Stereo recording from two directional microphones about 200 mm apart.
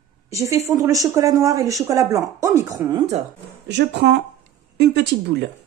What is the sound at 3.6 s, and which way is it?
A woman's voice, 60° right (ahead or behind).